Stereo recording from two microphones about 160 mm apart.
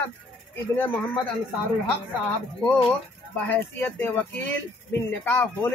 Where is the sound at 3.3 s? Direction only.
10° left (ahead or behind).